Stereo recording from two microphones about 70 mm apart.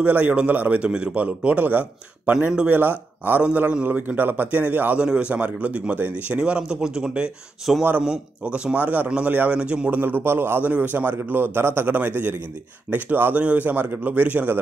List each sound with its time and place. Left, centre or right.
0.0 s a man's voice: right
9.9 s a man's voice: right